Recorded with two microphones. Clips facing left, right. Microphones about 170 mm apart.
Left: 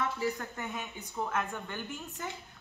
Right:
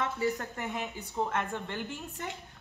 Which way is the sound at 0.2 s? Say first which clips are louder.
Right 2 dB; 35° right (ahead or behind).